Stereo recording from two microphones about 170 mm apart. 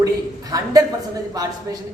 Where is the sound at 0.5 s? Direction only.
20° right (ahead or behind).